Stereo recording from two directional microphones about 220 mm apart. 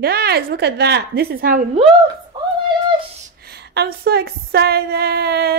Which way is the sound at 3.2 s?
45° right (ahead or behind).